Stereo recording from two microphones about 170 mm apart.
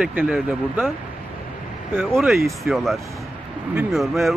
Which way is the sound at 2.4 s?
Centre (ahead or behind).